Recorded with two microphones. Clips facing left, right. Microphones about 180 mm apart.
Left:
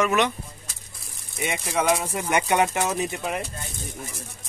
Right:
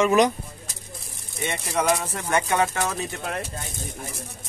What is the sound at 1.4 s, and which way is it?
Speech, centre (ahead or behind).